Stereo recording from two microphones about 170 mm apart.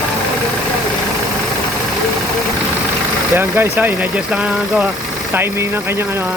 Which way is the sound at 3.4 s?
15° right (ahead or behind).